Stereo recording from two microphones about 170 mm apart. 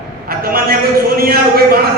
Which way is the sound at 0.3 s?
60° right (ahead or behind).